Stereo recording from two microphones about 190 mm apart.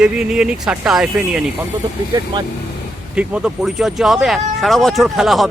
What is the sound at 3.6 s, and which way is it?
Speech, centre (ahead or behind).